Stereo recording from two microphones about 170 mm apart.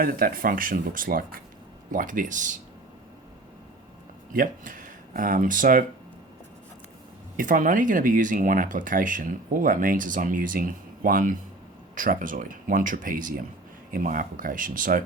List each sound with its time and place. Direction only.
0.0 s speech: 60° right (ahead or behind)
4.4 s speech: 50° right (ahead or behind)
7.3 s speech: 50° right (ahead or behind)